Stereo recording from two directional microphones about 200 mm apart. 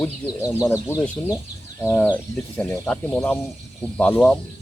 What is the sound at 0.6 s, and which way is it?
Speech, 15° left (ahead or behind).